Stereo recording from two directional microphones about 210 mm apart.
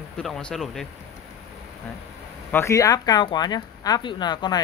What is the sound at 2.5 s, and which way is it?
Speech, 10° left (ahead or behind).